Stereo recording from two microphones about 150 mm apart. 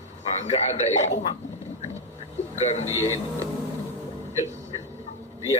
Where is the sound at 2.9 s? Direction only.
20° right (ahead or behind).